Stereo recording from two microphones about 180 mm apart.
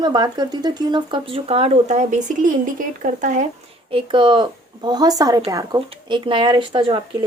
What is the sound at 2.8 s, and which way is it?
Speech, 45° right (ahead or behind).